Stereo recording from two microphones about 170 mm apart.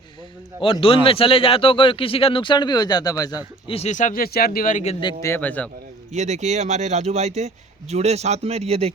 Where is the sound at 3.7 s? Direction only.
45° left (ahead or behind).